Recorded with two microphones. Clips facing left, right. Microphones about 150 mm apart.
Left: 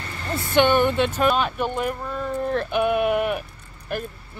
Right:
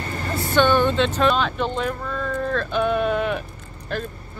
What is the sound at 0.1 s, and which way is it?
Vehicle, 50° right (ahead or behind).